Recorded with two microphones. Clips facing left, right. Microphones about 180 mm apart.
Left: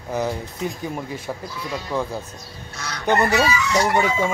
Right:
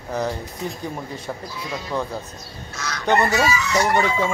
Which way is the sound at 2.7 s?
30° left (ahead or behind).